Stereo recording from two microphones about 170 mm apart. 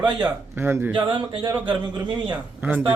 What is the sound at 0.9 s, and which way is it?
A man's voice, 30° right (ahead or behind).